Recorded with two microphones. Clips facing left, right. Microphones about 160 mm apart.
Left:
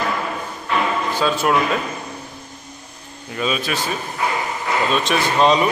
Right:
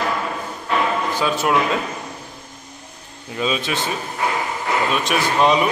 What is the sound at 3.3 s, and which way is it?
Speech, 20° right (ahead or behind).